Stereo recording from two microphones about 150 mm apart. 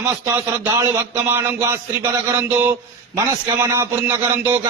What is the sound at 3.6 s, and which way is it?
Speech, 20° right (ahead or behind).